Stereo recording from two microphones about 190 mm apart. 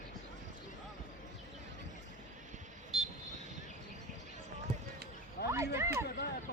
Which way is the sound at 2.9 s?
Centre (ahead or behind).